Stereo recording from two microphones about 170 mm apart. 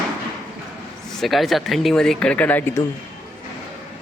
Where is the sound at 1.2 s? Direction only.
Centre (ahead or behind).